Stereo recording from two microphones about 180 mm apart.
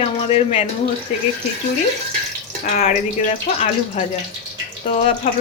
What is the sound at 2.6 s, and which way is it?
Speech, 40° left (ahead or behind).